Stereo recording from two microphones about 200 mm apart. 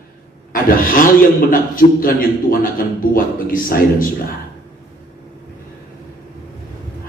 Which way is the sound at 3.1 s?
45° left (ahead or behind).